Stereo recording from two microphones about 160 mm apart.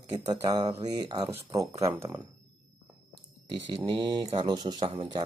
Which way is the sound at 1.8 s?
15° right (ahead or behind).